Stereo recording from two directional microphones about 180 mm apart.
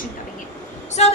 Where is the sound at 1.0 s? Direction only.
35° left (ahead or behind).